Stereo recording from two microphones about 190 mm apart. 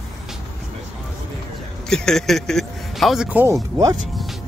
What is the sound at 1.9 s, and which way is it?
Speech, 5° left (ahead or behind).